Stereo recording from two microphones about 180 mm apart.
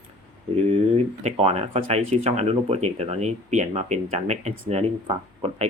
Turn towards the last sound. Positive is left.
turn(degrees=-35)  # may be behind; listen again after turning